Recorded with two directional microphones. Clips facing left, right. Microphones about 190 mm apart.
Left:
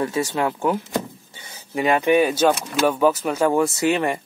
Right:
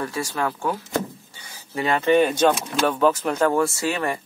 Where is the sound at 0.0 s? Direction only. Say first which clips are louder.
Left 4 dB; 20° left (ahead or behind).